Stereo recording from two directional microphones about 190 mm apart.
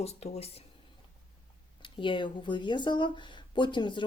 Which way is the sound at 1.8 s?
25° left (ahead or behind).